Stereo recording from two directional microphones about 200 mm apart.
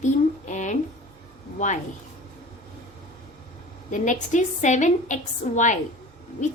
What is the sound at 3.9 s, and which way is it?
A woman's voice, 40° left (ahead or behind).